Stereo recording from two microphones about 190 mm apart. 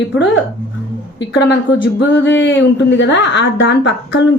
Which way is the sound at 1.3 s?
70° left (ahead or behind).